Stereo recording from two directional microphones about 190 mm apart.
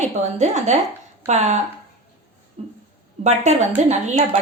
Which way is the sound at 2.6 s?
35° right (ahead or behind).